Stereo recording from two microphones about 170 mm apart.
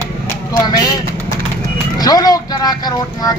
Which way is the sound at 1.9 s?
20° left (ahead or behind).